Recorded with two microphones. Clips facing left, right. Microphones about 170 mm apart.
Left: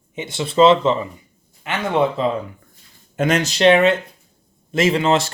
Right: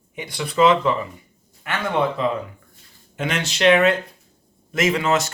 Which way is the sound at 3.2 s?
40° left (ahead or behind).